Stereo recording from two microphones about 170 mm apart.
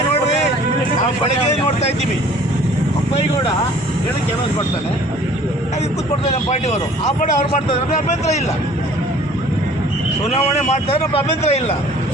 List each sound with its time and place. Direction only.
1.2 s vehicle: 40° left (ahead or behind)
6.3 s a man's voice: 40° left (ahead or behind)
10.2 s a man's voice: 40° left (ahead or behind)